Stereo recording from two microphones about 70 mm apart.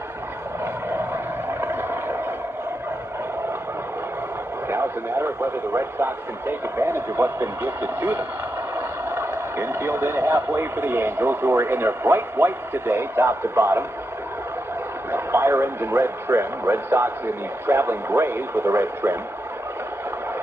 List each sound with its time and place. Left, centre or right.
0.8 s vehicle: right
4.6 s speech: right
15.0 s speech: right